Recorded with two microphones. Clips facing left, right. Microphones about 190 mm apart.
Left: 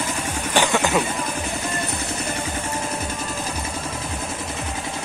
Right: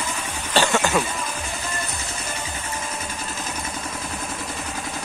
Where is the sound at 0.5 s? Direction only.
15° left (ahead or behind).